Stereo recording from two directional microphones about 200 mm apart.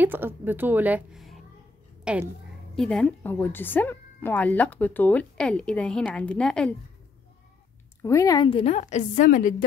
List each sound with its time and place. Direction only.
0.0 s a woman's voice: 10° right (ahead or behind)
8.0 s a woman's voice: 15° left (ahead or behind); by 9.7 s 45° left (ahead or behind)